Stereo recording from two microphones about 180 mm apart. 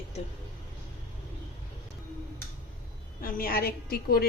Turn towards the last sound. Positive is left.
turn(degrees=55)  # may be behind; listen again after turning